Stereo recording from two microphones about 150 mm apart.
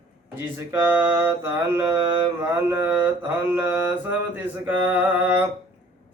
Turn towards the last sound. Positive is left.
turn(degrees=-10)  # may be behind; listen again after turning